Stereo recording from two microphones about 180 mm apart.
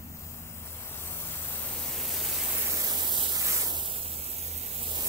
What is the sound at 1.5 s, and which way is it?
Pink noise, 5° left (ahead or behind).